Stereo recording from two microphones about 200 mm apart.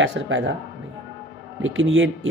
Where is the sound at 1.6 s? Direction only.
75° right (ahead or behind).